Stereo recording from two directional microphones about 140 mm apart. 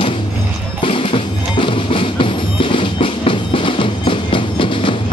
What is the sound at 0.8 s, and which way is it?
Music, 40° left (ahead or behind).